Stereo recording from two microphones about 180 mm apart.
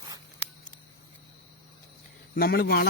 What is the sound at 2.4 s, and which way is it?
Speech, 60° left (ahead or behind).